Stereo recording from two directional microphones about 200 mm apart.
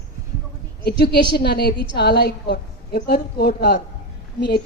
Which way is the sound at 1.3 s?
55° left (ahead or behind).